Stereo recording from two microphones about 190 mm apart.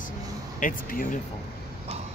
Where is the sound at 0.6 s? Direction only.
45° left (ahead or behind).